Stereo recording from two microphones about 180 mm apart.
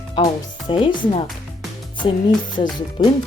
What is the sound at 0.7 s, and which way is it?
Speech, 30° left (ahead or behind).